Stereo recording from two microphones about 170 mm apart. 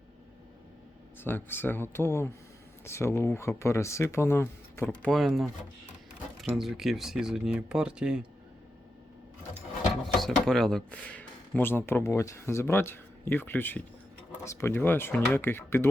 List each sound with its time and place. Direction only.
1.2 s speech: 10° left (ahead or behind)
5.1 s speech: centre (ahead or behind)
6.6 s speech: centre (ahead or behind)
10.0 s speech: centre (ahead or behind)